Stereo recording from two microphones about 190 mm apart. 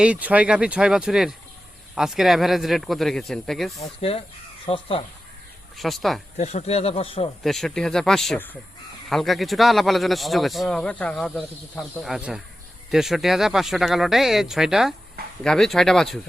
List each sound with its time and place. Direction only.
0.0 s speech: 5° right (ahead or behind)
3.8 s speech: 30° left (ahead or behind)
5.7 s speech: centre (ahead or behind)
6.3 s speech: 35° left (ahead or behind)
7.4 s speech: centre (ahead or behind)